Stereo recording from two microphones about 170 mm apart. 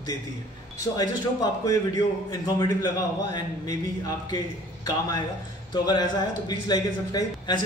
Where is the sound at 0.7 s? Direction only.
20° left (ahead or behind).